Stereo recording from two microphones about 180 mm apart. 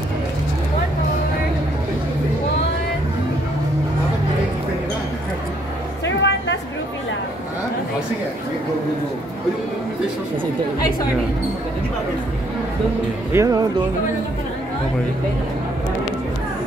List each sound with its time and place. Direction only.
6.0 s music: 90° left
13.3 s speech: 15° right (ahead or behind)